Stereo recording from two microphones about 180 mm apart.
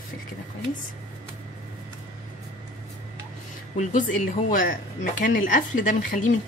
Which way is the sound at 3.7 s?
45° left (ahead or behind).